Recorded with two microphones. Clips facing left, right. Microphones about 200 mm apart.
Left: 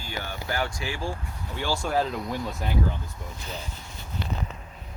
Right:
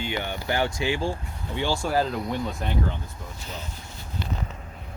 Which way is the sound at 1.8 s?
Centre (ahead or behind).